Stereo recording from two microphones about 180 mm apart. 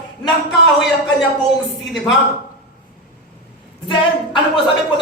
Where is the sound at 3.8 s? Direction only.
25° left (ahead or behind).